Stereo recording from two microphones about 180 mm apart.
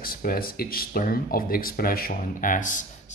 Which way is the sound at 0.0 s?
55° left (ahead or behind).